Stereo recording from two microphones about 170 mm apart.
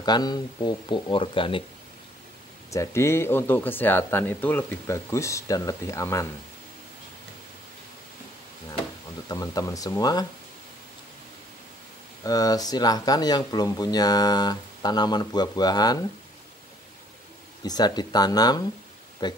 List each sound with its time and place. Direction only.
0.0 s speech: 25° left (ahead or behind)
2.7 s speech: 15° left (ahead or behind)
9.3 s speech: 20° left (ahead or behind)
12.2 s speech: 20° left (ahead or behind)
17.6 s speech: 25° left (ahead or behind)